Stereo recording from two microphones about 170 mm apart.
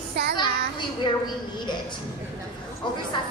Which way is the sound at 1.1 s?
25° left (ahead or behind).